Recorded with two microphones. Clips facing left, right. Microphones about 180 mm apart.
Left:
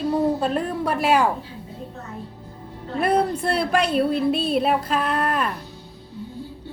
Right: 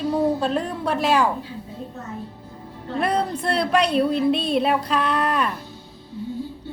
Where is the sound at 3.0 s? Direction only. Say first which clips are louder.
Left 3 dB; 5° left (ahead or behind).